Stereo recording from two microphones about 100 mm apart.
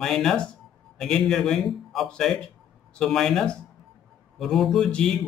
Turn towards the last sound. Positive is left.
turn(degrees=5)  # may be behind; listen again after turning